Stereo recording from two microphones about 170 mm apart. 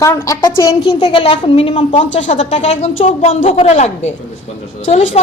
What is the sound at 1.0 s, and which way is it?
A woman's voice, 35° left (ahead or behind).